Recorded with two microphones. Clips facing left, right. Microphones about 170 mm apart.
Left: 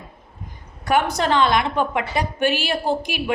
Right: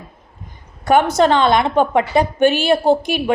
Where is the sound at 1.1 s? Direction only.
25° right (ahead or behind).